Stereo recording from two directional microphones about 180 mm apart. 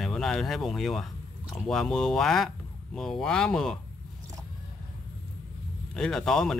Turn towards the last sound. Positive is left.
turn(degrees=0)  # may be behind; listen again after turning